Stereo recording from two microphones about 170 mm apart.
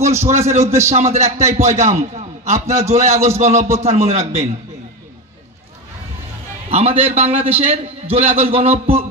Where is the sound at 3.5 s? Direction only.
15° right (ahead or behind).